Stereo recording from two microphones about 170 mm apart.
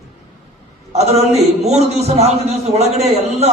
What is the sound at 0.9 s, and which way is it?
A man's voice, 40° right (ahead or behind).